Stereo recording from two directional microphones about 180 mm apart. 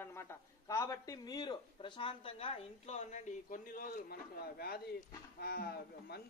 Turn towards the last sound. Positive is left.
turn(degrees=60)  # may be behind; listen again after turning